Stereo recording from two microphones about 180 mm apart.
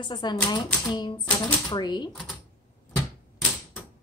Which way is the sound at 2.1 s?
Centre (ahead or behind).